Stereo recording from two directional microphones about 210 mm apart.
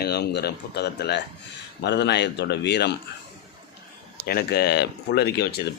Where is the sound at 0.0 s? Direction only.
50° left (ahead or behind).